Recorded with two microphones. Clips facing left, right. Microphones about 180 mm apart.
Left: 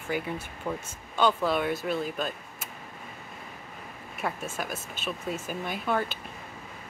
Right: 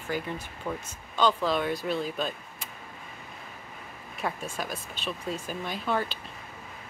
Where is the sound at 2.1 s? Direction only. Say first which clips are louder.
Even; 5° left (ahead or behind).